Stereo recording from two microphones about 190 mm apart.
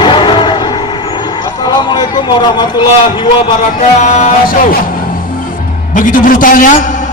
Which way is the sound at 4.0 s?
35° left (ahead or behind).